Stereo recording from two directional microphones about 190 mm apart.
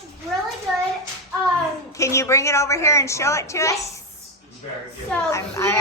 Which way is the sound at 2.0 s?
15° left (ahead or behind).